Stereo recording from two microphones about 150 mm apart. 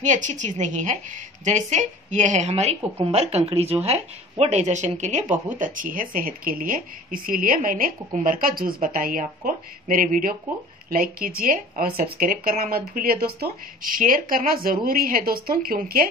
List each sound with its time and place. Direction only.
0.0 s a woman's voice: 55° right (ahead or behind)
5.6 s speech: 65° right (ahead or behind)